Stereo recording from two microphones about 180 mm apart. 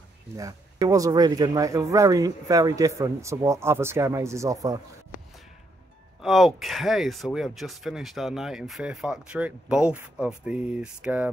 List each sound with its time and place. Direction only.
0.4 s speech: 20° right (ahead or behind)
6.2 s speech: centre (ahead or behind)